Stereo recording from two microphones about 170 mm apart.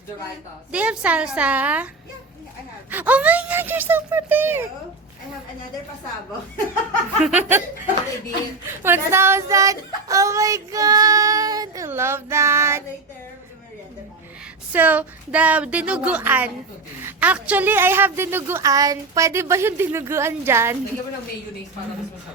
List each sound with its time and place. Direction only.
0.7 s a woman's voice: 5° right (ahead or behind)
2.9 s a woman's voice: 10° right (ahead or behind)
7.2 s a woman's voice: 5° right (ahead or behind)
8.8 s child singing: 15° right (ahead or behind)
14.7 s a woman's voice: 10° right (ahead or behind)